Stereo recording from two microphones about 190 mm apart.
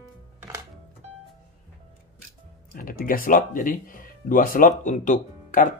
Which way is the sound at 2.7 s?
50° left (ahead or behind).